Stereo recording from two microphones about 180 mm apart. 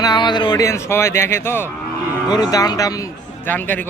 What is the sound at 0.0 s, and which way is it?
A man's voice, 25° left (ahead or behind).